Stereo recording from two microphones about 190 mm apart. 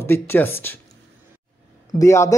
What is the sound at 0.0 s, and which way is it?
Speech, 10° left (ahead or behind).